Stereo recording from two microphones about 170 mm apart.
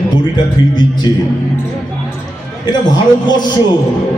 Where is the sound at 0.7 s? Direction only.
25° left (ahead or behind).